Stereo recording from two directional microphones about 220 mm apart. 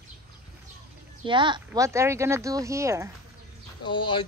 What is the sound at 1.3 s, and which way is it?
Speech, 20° right (ahead or behind).